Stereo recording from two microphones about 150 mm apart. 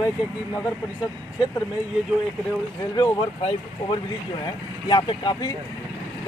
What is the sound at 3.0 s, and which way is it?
Speech, 30° left (ahead or behind).